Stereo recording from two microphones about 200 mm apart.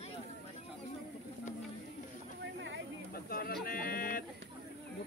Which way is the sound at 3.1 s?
45° left (ahead or behind).